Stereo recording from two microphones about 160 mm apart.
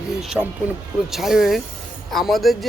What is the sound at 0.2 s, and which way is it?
Speech, 5° right (ahead or behind).